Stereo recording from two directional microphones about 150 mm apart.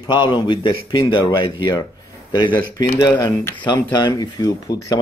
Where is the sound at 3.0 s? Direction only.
25° left (ahead or behind).